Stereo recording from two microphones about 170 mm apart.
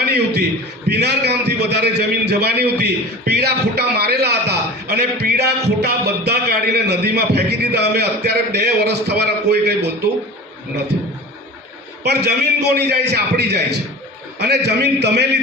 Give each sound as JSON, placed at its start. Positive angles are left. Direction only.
{"t": 0.9, "sound": "a man's voice", "side_deg": -75}
{"t": 12.0, "sound": "a man's voice", "side_deg": -75}